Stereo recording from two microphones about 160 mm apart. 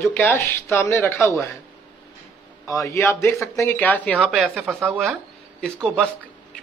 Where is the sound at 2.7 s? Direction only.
20° left (ahead or behind).